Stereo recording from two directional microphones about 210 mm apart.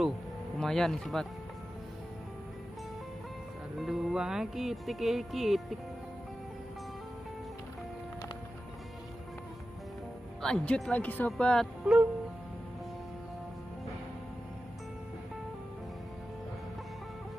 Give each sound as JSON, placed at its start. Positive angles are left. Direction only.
{"t": 0.6, "sound": "speech", "side_deg": 0}
{"t": 3.7, "sound": "speech", "side_deg": 0}
{"t": 10.4, "sound": "speech", "side_deg": 5}